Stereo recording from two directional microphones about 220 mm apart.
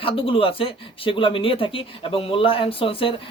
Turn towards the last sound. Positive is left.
turn(degrees=25)  # may be behind; listen again after turning